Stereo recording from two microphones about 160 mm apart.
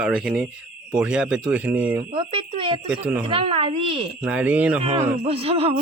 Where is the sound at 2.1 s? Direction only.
35° right (ahead or behind).